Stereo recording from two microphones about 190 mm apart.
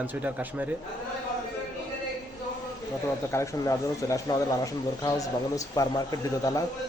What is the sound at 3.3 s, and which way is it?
Speech, 15° left (ahead or behind).